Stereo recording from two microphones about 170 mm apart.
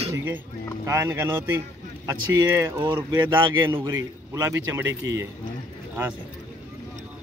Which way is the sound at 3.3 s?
30° right (ahead or behind).